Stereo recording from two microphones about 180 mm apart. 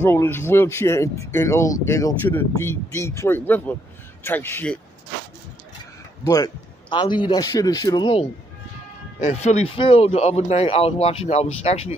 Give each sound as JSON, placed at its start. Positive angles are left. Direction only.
{"t": 0.0, "sound": "speech", "side_deg": 10}
{"t": 6.2, "sound": "a man's voice", "side_deg": 20}
{"t": 9.2, "sound": "speech", "side_deg": 40}